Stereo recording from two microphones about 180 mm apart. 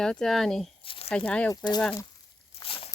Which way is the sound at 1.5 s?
25° left (ahead or behind).